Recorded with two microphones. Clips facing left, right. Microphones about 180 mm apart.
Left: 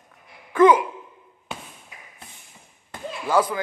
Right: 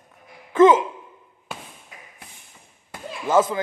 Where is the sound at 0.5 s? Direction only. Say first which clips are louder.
Right 1 dB; 25° right (ahead or behind).